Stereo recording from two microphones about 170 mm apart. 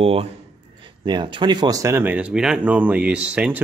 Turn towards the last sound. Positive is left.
turn(degrees=-10)  # may be behind; listen again after turning